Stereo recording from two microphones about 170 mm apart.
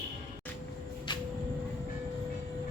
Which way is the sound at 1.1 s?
25° left (ahead or behind).